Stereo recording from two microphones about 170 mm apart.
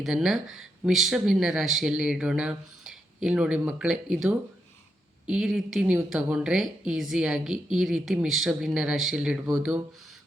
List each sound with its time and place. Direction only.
0.0 s speech: centre (ahead or behind)